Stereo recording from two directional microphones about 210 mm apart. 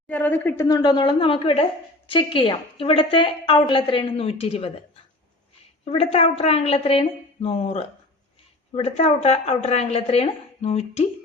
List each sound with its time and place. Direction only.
0.1 s a woman's voice: 10° left (ahead or behind); by 4.7 s 30° left (ahead or behind)
5.8 s a woman's voice: 30° left (ahead or behind)